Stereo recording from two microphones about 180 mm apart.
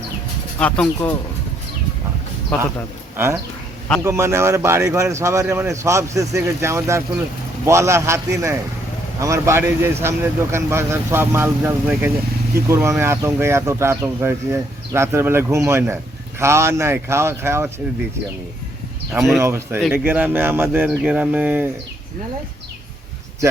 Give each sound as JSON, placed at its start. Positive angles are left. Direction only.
{"t": 0.6, "sound": "speech", "side_deg": 5}
{"t": 4.0, "sound": "speech", "side_deg": -15}
{"t": 19.4, "sound": "speech", "side_deg": -15}